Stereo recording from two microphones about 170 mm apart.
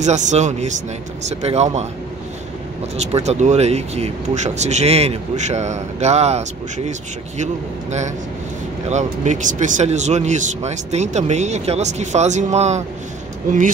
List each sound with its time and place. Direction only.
0.0 s speech: 45° right (ahead or behind)
3.0 s speech: 40° right (ahead or behind)
8.9 s speech: 45° right (ahead or behind)